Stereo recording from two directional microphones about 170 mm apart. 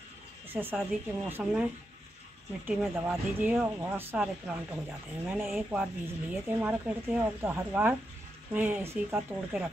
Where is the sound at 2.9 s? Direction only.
10° right (ahead or behind).